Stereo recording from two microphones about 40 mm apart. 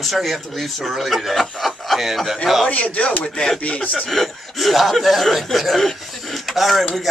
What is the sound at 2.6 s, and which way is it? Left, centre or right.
Speech, left.